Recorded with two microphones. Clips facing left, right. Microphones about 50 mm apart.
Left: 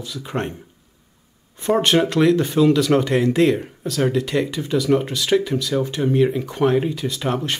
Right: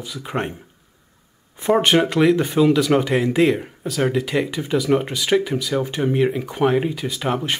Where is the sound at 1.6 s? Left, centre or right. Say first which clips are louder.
Right 1 dB; centre.